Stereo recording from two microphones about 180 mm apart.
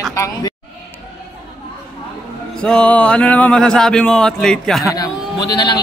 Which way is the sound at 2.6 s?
5° left (ahead or behind).